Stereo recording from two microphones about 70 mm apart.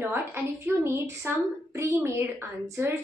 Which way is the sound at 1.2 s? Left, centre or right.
Right.